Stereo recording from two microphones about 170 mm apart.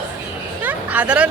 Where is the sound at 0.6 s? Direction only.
10° right (ahead or behind).